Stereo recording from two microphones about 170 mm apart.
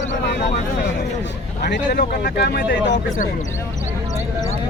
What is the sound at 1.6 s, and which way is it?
Speech, 70° left (ahead or behind).